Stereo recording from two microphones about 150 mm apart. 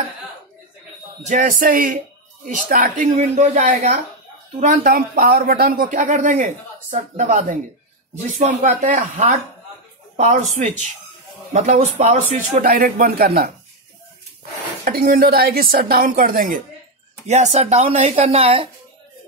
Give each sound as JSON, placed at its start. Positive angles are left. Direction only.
{"t": 1.2, "sound": "speech", "side_deg": -60}
{"t": 4.8, "sound": "speech", "side_deg": -80}
{"t": 14.9, "sound": "speech", "side_deg": -75}
{"t": 17.3, "sound": "speech", "side_deg": -50}